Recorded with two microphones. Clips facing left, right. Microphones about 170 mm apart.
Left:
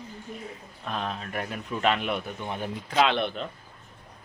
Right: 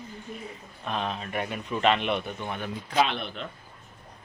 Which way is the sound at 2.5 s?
30° left (ahead or behind).